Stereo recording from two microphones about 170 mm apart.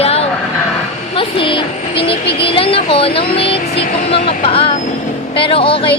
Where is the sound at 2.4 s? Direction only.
30° left (ahead or behind).